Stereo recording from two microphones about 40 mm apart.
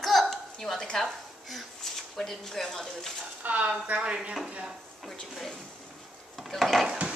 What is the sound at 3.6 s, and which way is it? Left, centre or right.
Speech, right.